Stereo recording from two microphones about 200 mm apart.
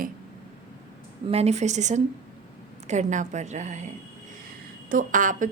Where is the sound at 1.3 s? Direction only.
35° right (ahead or behind).